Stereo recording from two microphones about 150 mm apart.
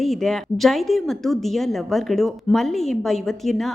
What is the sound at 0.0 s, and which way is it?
A woman's voice, centre (ahead or behind).